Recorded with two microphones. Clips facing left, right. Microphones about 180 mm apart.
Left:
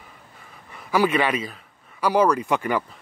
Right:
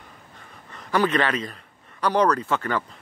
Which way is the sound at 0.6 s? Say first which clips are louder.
Left 1 dB; 10° left (ahead or behind).